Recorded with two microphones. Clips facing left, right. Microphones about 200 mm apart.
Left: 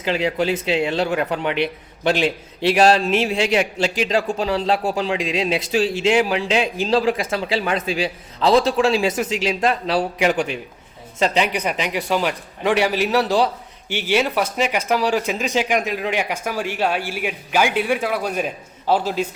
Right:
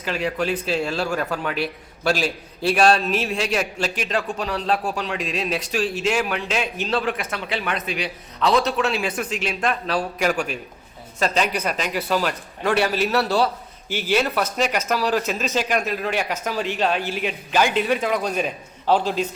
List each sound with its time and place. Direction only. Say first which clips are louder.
0.0 s a man's voice: left 4 dB; 25° left (ahead or behind)
5.1 s a man's voice: left 4 dB; 90° left
6.1 s a man's voice: left 5 dB; 30° left (ahead or behind)
9.3 s a man's voice: left 5 dB; 90° left
11.2 s speech: left 2 dB; 15° left (ahead or behind)